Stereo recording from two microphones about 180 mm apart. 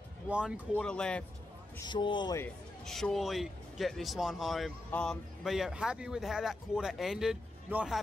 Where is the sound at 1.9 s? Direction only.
25° left (ahead or behind).